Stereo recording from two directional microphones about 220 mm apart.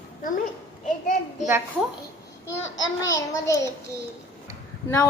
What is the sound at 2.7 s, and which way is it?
Speech, 60° left (ahead or behind).